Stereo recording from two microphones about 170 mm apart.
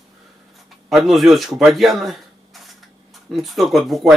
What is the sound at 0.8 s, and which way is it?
Speech, centre (ahead or behind).